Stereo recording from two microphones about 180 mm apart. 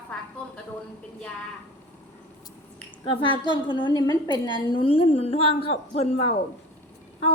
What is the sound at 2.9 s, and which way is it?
A woman's voice, 30° left (ahead or behind).